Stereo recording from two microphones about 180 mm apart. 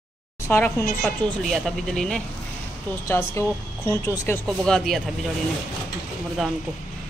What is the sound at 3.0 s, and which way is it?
A woman's voice, 15° left (ahead or behind).